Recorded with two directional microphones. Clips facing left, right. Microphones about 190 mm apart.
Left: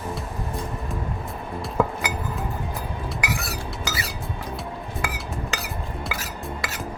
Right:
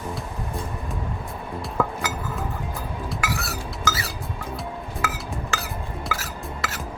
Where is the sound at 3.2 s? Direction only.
20° left (ahead or behind).